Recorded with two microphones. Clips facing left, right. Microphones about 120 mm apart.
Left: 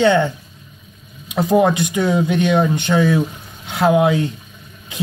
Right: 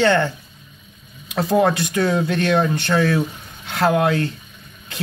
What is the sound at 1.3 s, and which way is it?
A man's voice, 15° left (ahead or behind).